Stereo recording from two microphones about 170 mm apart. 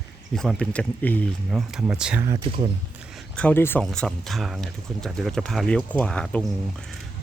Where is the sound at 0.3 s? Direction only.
5° left (ahead or behind).